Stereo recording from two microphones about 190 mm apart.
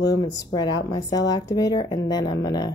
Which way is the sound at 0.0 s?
20° left (ahead or behind).